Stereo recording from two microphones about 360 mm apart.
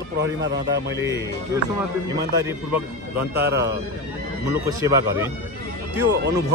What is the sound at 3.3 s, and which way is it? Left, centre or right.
Speech, right.